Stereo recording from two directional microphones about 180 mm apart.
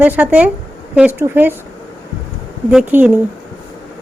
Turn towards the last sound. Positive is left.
turn(degrees=-10)  # may be behind; listen again after turning